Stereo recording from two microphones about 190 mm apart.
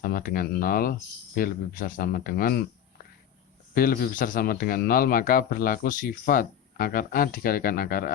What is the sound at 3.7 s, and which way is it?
Speech, 50° left (ahead or behind).